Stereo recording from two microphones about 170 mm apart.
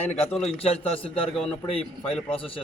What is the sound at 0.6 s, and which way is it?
A man's voice, 35° left (ahead or behind).